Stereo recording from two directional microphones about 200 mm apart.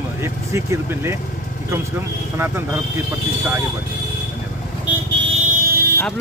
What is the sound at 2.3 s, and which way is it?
Speech, 10° right (ahead or behind).